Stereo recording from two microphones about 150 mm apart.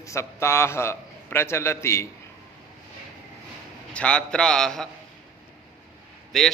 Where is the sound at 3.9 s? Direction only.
5° left (ahead or behind).